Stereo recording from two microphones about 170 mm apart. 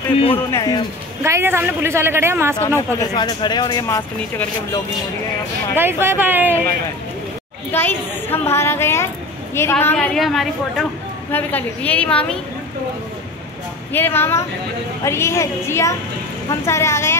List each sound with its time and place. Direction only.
0.5 s speech: 20° left (ahead or behind)
1.2 s a woman's voice: 15° right (ahead or behind)
2.6 s a woman's voice: 15° left (ahead or behind)
3.2 s speech: 25° left (ahead or behind)
5.8 s a woman's voice: 15° right (ahead or behind)
7.7 s a woman's voice: 15° left (ahead or behind)
9.9 s a woman's voice: centre (ahead or behind)
13.9 s a woman's voice: 10° left (ahead or behind)